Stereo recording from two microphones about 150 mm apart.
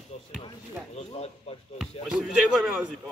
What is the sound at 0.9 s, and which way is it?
Speech, 45° left (ahead or behind).